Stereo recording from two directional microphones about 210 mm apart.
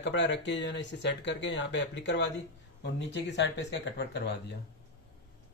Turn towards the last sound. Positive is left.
turn(degrees=55)  # may be behind; listen again after turning